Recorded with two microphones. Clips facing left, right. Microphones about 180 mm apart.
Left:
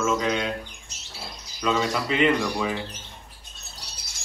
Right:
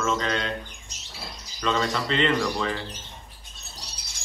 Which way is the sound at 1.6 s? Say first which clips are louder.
Left 1 dB; 5° left (ahead or behind).